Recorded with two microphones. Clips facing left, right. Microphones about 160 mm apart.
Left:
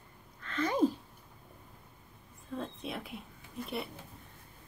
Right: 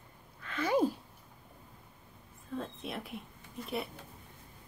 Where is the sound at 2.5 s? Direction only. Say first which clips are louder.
Even; centre (ahead or behind).